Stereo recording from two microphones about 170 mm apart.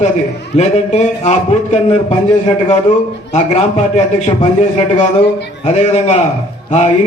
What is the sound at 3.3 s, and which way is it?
A man's voice, 45° left (ahead or behind).